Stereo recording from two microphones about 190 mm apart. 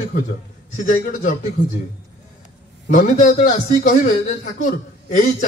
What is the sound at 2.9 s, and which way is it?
A man's voice, 40° left (ahead or behind).